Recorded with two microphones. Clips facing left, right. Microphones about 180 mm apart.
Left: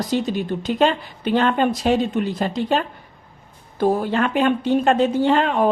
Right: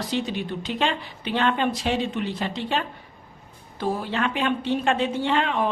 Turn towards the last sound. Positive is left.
turn(degrees=45)  # may be behind; listen again after turning